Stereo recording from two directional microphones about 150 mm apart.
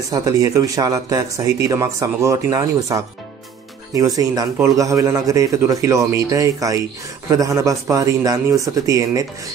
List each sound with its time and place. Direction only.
0.1 s speech: 25° right (ahead or behind)